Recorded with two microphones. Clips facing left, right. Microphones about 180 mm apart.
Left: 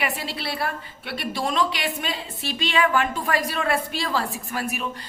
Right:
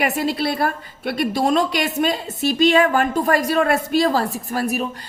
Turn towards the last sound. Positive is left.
turn(degrees=-40)  # may be behind; listen again after turning